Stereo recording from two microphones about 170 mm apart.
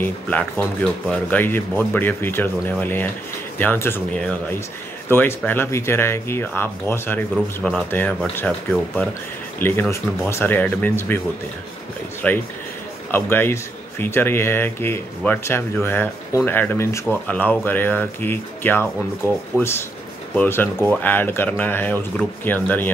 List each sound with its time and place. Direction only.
0.0 s speech: 10° left (ahead or behind)
12.2 s speech: 10° left (ahead or behind)